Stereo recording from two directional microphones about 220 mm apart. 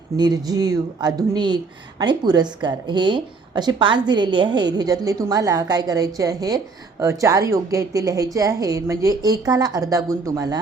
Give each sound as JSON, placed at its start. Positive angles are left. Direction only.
{"t": 0.2, "sound": "a woman's voice", "side_deg": -15}